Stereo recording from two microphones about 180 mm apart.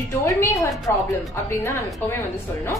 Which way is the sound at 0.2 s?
15° left (ahead or behind).